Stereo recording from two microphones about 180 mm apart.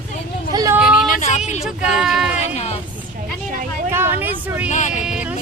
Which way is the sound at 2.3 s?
35° left (ahead or behind).